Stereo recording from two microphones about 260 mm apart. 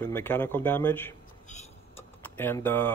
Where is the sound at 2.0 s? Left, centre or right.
Centre.